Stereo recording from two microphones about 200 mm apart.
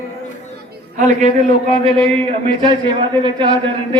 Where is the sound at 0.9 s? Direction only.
35° right (ahead or behind).